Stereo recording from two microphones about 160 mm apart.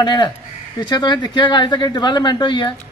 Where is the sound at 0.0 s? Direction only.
25° left (ahead or behind).